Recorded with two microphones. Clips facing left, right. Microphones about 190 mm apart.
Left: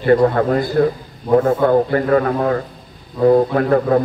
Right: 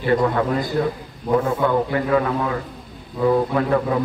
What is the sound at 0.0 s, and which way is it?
A man's voice, 45° left (ahead or behind).